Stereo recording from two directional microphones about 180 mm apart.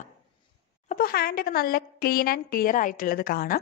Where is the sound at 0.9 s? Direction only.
55° left (ahead or behind).